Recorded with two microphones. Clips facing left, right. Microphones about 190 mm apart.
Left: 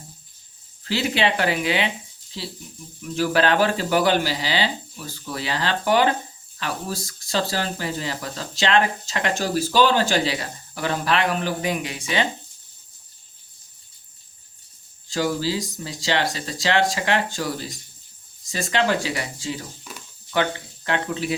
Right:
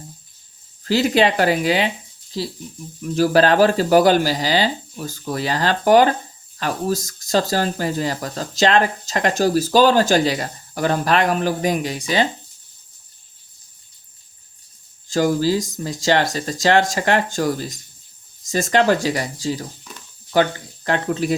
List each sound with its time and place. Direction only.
0.9 s speech: 40° right (ahead or behind)
15.1 s speech: 45° right (ahead or behind)